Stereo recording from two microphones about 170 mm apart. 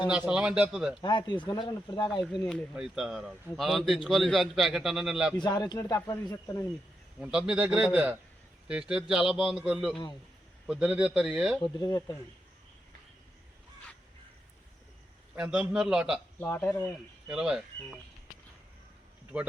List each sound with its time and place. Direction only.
0.1 s a man's voice: 5° right (ahead or behind)
1.0 s speech: 25° left (ahead or behind)
2.7 s a man's voice: 5° right (ahead or behind)
5.4 s speech: 25° left (ahead or behind)
7.2 s a man's voice: 5° right (ahead or behind)
11.8 s speech: 25° left (ahead or behind)
15.4 s a man's voice: 5° right (ahead or behind)
16.4 s speech: 10° left (ahead or behind)
17.2 s a man's voice: 5° right (ahead or behind)
19.3 s speech: 10° right (ahead or behind)